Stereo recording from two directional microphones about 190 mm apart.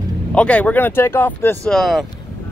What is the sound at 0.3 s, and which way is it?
Speech, 5° left (ahead or behind).